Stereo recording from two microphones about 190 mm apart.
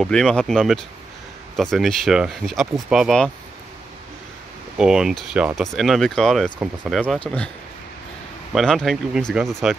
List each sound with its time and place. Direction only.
0.0 s speech: centre (ahead or behind)
4.7 s speech: 5° right (ahead or behind)
8.5 s speech: centre (ahead or behind)